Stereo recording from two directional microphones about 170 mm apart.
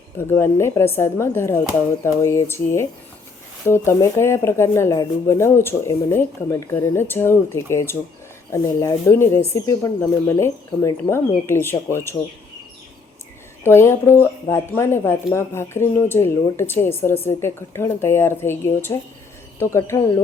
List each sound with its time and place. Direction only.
0.2 s speech: 15° left (ahead or behind)
13.7 s speech: 15° left (ahead or behind)